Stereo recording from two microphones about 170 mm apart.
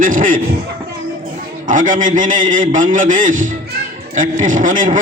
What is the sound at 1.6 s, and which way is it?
A man's voice, 50° right (ahead or behind).